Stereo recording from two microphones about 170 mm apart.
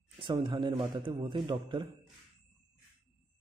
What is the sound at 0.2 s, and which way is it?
Speech, 30° right (ahead or behind).